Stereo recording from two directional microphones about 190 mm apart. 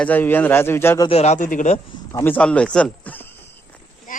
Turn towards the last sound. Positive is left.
turn(degrees=10)  # may be behind; listen again after turning